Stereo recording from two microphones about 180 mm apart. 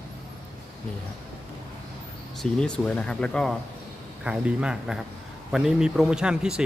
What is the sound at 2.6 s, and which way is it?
A man's voice, 5° left (ahead or behind).